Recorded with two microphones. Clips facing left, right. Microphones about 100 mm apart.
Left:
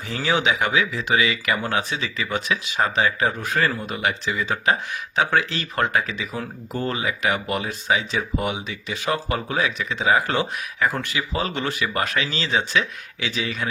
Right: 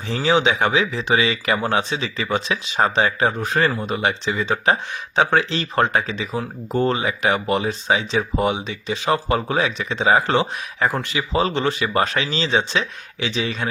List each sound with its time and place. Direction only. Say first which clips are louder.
0.1 s speech: right 4 dB; 20° right (ahead or behind)